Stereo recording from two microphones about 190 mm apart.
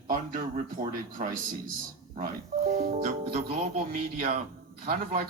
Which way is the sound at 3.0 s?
50° right (ahead or behind).